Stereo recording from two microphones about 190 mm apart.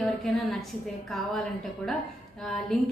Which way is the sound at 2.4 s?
Centre (ahead or behind).